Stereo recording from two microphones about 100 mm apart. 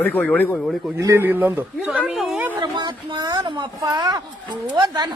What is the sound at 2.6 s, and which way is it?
A child's voice, 50° right (ahead or behind).